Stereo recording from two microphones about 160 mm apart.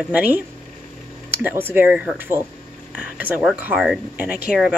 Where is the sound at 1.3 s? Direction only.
15° right (ahead or behind).